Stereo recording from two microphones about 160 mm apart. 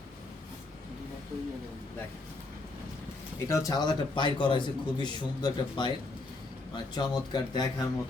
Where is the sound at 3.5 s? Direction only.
20° left (ahead or behind).